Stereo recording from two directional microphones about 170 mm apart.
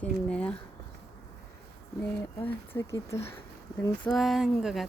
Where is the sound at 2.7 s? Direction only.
15° left (ahead or behind).